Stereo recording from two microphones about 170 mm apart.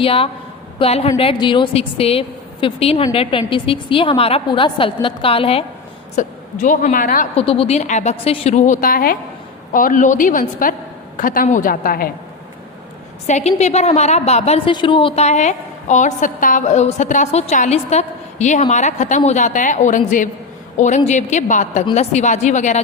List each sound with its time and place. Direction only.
0.0 s a woman's voice: 35° left (ahead or behind)
6.1 s a woman's voice: 45° left (ahead or behind)
7.3 s a woman's voice: 35° left (ahead or behind); by 12.1 s 55° left (ahead or behind)
13.2 s a woman's voice: 40° left (ahead or behind)